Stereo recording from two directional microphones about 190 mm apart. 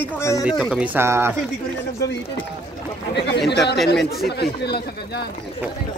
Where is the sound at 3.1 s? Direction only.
65° left (ahead or behind).